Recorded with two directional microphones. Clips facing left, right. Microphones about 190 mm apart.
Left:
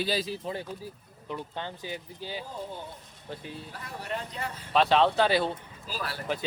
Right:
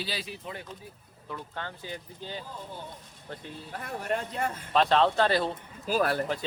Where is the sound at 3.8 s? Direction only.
50° right (ahead or behind).